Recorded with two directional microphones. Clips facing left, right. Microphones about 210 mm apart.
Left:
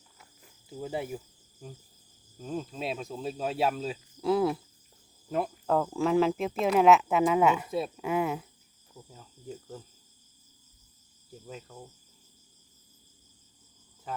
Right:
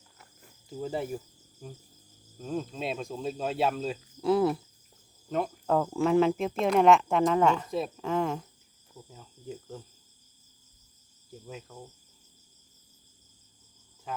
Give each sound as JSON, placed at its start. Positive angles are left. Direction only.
{"t": 0.7, "sound": "speech", "side_deg": 5}
{"t": 2.4, "sound": "speech", "side_deg": 0}
{"t": 11.4, "sound": "speech", "side_deg": 0}
{"t": 14.1, "sound": "cricket", "side_deg": 0}